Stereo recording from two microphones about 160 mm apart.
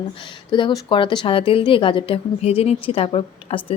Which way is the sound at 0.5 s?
30° left (ahead or behind).